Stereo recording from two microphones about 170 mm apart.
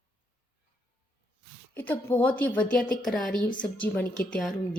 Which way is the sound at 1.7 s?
10° left (ahead or behind).